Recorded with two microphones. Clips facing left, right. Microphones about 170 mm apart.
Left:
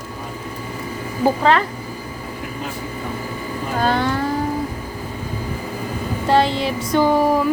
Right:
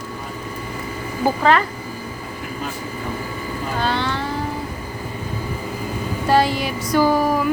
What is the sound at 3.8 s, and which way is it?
Vehicle, 45° left (ahead or behind).